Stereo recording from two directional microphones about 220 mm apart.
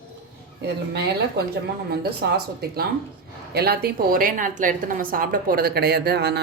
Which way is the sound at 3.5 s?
45° right (ahead or behind).